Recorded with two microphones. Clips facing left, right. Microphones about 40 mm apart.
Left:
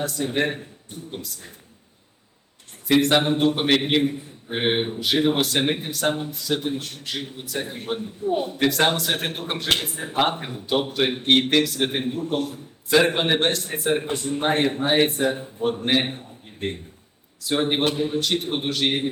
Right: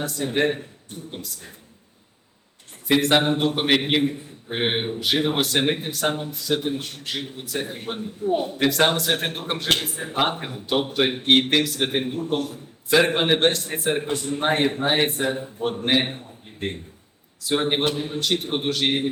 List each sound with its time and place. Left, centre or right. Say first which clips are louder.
0.0 s speech: right 1 dB; centre
2.8 s a man's voice: even; centre
8.2 s a man's voice: right 2 dB; right
8.5 s a man's voice: even; centre
17.4 s speech: even; centre